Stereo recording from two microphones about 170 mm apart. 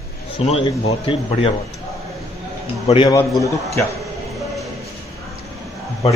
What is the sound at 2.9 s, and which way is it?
Speech, 40° left (ahead or behind).